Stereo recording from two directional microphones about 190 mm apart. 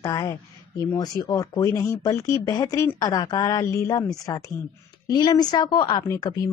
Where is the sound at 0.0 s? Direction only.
20° left (ahead or behind).